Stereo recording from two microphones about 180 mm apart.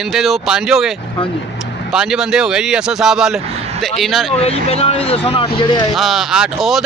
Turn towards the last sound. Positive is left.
turn(degrees=-5)  # may be behind; listen again after turning